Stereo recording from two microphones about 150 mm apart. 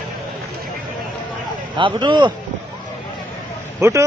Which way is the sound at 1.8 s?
35° right (ahead or behind).